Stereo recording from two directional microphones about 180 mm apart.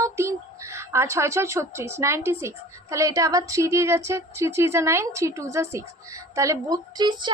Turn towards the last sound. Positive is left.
turn(degrees=-25)  # may be behind; listen again after turning